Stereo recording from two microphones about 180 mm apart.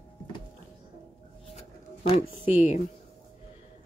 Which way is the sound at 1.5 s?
40° left (ahead or behind).